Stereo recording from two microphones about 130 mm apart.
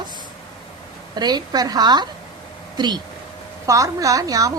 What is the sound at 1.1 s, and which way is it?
A woman's voice, 35° right (ahead or behind).